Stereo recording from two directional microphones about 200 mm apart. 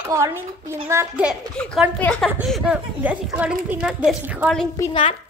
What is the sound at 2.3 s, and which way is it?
A woman's voice, 5° right (ahead or behind).